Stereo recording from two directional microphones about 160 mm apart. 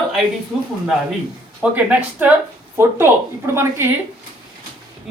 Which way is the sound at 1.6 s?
10° right (ahead or behind).